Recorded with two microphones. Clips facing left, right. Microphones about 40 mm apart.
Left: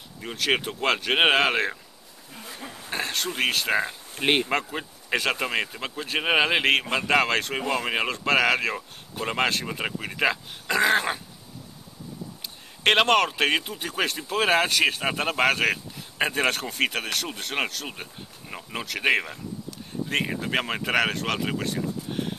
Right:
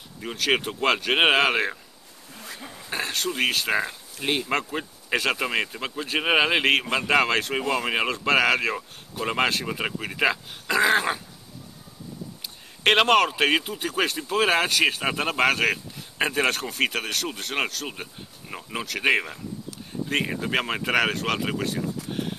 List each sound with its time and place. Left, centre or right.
0.2 s speech: centre
2.6 s a sound: centre
3.3 s speech: centre
4.1 s speech: left
4.5 s speech: centre
12.4 s speech: centre